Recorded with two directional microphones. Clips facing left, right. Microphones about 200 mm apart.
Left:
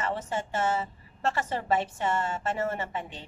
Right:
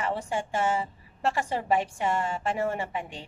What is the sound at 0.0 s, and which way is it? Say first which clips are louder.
A woman's voice: right 1 dB; 10° right (ahead or behind).